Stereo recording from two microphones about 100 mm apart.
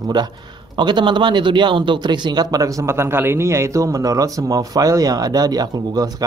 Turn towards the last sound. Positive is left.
turn(degrees=-40)  # may be behind; listen again after turning